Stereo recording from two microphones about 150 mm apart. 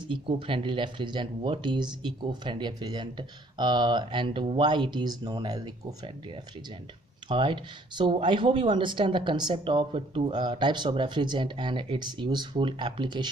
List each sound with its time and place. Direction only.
0.1 s speech: 35° right (ahead or behind)
7.2 s speech: 35° right (ahead or behind)